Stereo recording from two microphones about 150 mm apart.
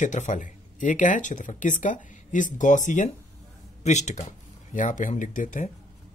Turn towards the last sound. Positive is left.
turn(degrees=55)  # may be behind; listen again after turning